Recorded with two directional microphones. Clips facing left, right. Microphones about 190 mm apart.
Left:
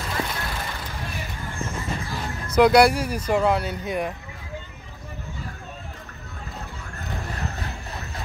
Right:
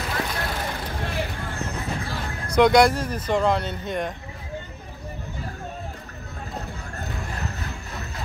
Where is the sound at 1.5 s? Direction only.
65° right (ahead or behind).